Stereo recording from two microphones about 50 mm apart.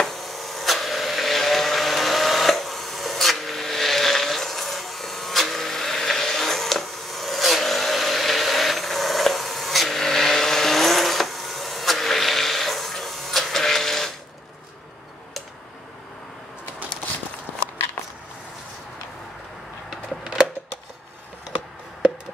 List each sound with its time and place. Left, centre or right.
0.0 s vehicle: centre